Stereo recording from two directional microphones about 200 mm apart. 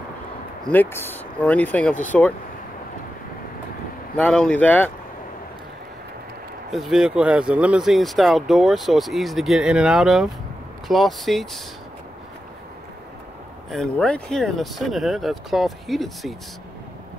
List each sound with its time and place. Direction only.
0.7 s speech: 10° left (ahead or behind)
4.2 s speech: 5° left (ahead or behind)
6.7 s speech: centre (ahead or behind)
13.7 s speech: 5° left (ahead or behind)